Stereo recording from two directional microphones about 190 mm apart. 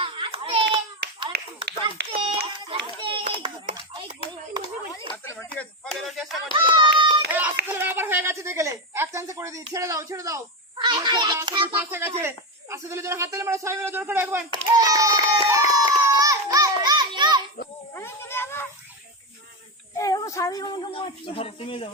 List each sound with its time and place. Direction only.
0.0 s a sound: 30° right (ahead or behind)
1.3 s clapping: 60° right (ahead or behind)
2.1 s a child's voice: 25° right (ahead or behind)
3.0 s children playing: 25° right (ahead or behind)
5.1 s speech: 15° left (ahead or behind)
6.5 s speech: 25° right (ahead or behind)
7.7 s a woman's voice: 10° right (ahead or behind)
11.9 s a woman's voice: 10° right (ahead or behind)
14.5 s a sound: 20° right (ahead or behind)
17.9 s a sound: 10° left (ahead or behind)
20.0 s a sound: 20° left (ahead or behind)
21.2 s speech: 30° left (ahead or behind)